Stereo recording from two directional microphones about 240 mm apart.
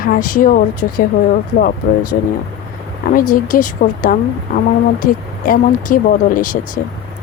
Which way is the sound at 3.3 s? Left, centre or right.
Left.